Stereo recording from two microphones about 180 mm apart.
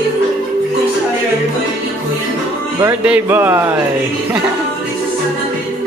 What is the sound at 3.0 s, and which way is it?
Speech, 10° right (ahead or behind).